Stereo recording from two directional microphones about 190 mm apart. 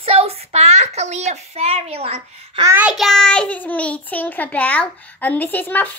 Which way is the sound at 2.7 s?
5° right (ahead or behind).